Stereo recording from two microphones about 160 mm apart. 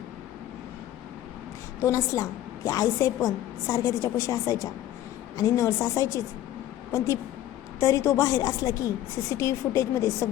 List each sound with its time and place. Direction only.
1.8 s a woman's voice: 20° left (ahead or behind)
7.8 s a woman's voice: 20° left (ahead or behind)